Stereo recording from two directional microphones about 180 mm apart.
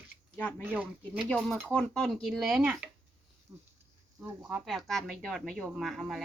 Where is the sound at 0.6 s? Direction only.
10° right (ahead or behind).